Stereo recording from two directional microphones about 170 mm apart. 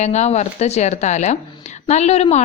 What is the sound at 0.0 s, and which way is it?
A woman's voice, 40° left (ahead or behind).